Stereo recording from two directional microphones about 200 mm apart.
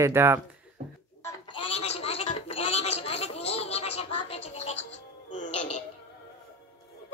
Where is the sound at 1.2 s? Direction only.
15° left (ahead or behind).